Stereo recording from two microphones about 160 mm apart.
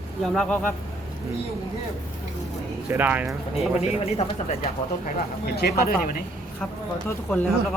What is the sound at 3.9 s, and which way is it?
Speech, 40° left (ahead or behind).